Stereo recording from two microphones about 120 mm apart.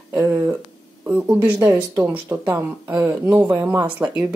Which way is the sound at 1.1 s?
10° right (ahead or behind).